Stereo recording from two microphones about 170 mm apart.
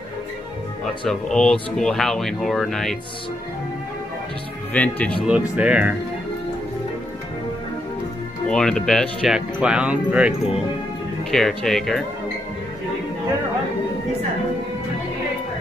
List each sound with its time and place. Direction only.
1.0 s speech: 5° left (ahead or behind)
4.7 s speech: 10° left (ahead or behind)
5.6 s speech: 5° right (ahead or behind)
8.5 s speech: 5° left (ahead or behind)